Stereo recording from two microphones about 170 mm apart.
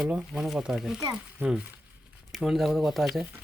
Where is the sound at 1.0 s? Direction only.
20° right (ahead or behind).